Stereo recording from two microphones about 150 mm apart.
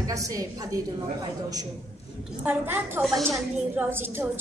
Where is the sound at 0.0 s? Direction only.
25° right (ahead or behind).